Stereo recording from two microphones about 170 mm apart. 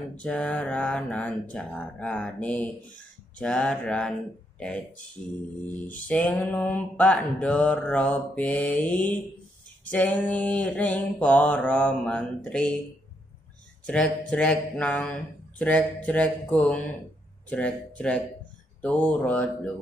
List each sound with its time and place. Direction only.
0.2 s mantra: 5° left (ahead or behind)
3.3 s speech: 5° left (ahead or behind)
5.7 s mantra: 10° left (ahead or behind)
13.8 s speech: 5° left (ahead or behind)
14.3 s mantra: 5° left (ahead or behind)
17.5 s speech: 5° left (ahead or behind)
18.8 s mantra: 10° left (ahead or behind)